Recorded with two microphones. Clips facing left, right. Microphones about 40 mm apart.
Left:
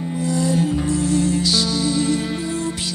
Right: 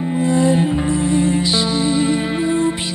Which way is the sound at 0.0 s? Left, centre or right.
Right.